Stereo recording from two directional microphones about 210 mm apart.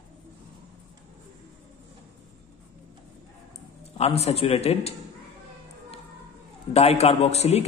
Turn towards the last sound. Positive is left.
turn(degrees=30)  # may be behind; listen again after turning